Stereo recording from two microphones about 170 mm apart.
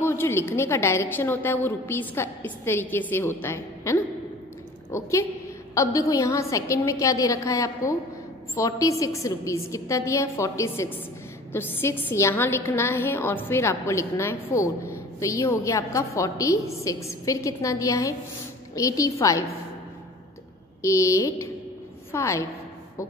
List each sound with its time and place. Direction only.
0.0 s a woman's voice: 15° left (ahead or behind)
20.8 s a woman's voice: 15° left (ahead or behind)